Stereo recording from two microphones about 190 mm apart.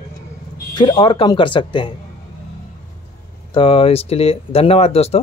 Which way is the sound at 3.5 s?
30° left (ahead or behind).